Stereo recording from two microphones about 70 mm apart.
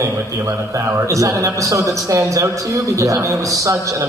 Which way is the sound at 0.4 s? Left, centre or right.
Right.